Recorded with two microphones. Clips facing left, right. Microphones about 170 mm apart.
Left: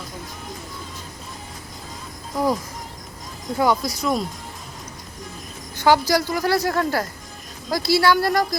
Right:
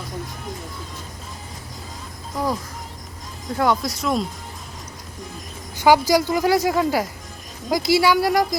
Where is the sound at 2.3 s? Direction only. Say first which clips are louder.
Left 3 dB; centre (ahead or behind).